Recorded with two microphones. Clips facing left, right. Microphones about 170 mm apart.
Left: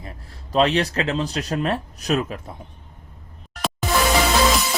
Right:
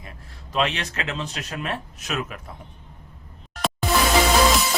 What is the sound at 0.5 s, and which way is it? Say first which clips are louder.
Speech: left 6 dB; 35° left (ahead or behind).